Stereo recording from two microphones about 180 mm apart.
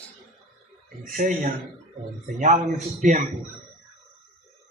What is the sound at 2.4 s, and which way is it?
Speech, 45° right (ahead or behind).